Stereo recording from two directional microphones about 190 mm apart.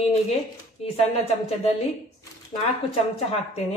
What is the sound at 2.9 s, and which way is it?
Speech, 30° left (ahead or behind).